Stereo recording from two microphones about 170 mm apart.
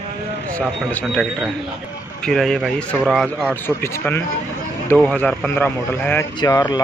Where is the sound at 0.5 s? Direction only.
10° left (ahead or behind).